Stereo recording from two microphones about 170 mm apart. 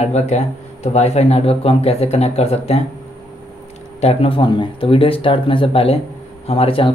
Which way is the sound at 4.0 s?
35° left (ahead or behind).